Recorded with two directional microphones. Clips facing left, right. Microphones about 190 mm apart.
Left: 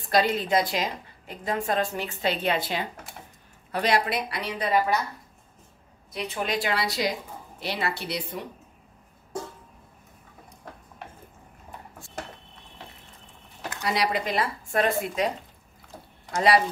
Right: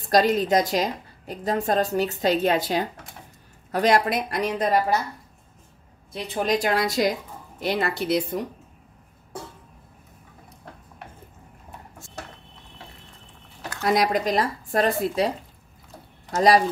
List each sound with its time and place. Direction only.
0.1 s a woman's voice: 45° right (ahead or behind)
6.1 s a woman's voice: 35° right (ahead or behind); by 8.4 s 50° right (ahead or behind)
13.8 s a woman's voice: 45° right (ahead or behind)